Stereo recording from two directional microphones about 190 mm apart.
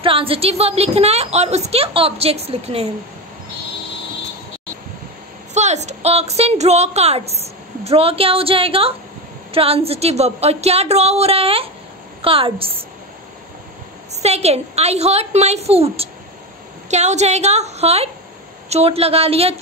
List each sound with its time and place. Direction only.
0.0 s a woman's voice: 30° right (ahead or behind)
5.5 s a woman's voice: 35° right (ahead or behind)
14.1 s a woman's voice: 35° right (ahead or behind)